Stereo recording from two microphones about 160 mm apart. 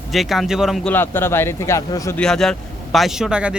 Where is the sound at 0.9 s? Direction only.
15° left (ahead or behind).